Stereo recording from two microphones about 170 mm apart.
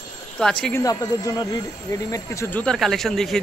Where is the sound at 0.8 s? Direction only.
20° left (ahead or behind).